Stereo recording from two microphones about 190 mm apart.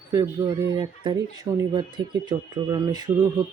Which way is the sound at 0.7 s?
25° right (ahead or behind).